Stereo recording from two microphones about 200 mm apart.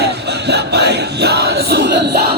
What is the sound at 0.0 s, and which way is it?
Music, 55° right (ahead or behind).